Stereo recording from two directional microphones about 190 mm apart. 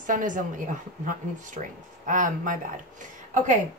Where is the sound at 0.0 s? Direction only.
45° right (ahead or behind).